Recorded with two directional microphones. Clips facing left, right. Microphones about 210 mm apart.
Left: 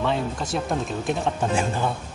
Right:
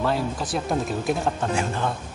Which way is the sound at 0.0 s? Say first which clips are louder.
Even; 5° right (ahead or behind).